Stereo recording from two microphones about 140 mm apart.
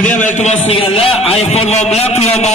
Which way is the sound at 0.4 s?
50° left (ahead or behind).